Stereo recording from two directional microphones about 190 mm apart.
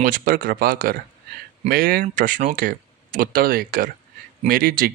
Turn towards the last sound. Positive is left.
turn(degrees=-50)  # may be behind; listen again after turning